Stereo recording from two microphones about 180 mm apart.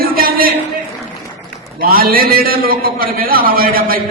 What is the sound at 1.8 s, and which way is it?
A man's voice, 55° right (ahead or behind).